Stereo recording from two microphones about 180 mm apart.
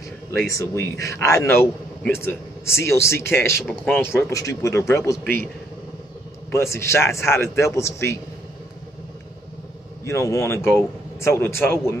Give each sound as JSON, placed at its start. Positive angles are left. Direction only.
{"t": 0.5, "sound": "a man's voice", "side_deg": 15}
{"t": 6.5, "sound": "a man's voice", "side_deg": 15}
{"t": 10.0, "sound": "a man's voice", "side_deg": 15}